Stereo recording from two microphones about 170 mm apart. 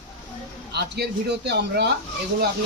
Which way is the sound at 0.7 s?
75° right (ahead or behind).